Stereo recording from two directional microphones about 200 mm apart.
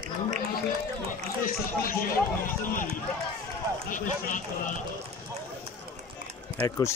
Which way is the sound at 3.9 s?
40° left (ahead or behind).